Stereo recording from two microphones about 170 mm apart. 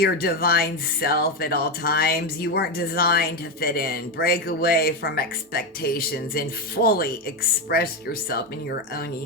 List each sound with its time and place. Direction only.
0.0 s speech: 65° left (ahead or behind)